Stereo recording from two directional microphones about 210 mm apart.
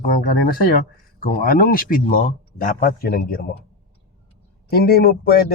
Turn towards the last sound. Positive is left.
turn(degrees=45)  # may be behind; listen again after turning